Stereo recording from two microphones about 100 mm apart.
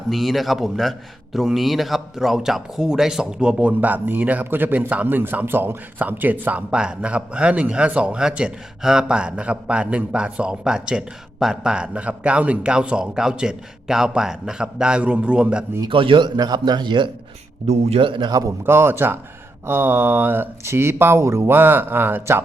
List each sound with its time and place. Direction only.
0.1 s a man's voice: centre (ahead or behind)
15.9 s a man's voice: 60° right (ahead or behind)
16.4 s speech: 40° right (ahead or behind)
17.7 s speech: 85° right; by 18.3 s 55° right (ahead or behind)
18.3 s a man's voice: 35° right (ahead or behind)
18.6 s speech: 20° right (ahead or behind)